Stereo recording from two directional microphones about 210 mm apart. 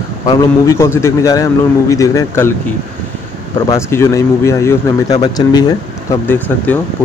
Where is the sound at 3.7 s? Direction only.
15° left (ahead or behind).